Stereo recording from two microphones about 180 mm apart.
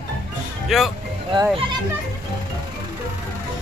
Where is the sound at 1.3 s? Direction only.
25° right (ahead or behind).